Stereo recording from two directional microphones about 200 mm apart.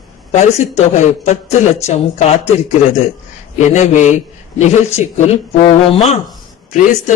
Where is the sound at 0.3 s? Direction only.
35° left (ahead or behind).